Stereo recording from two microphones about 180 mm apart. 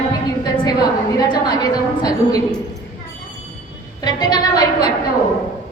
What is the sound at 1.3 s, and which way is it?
A woman's voice, 25° left (ahead or behind).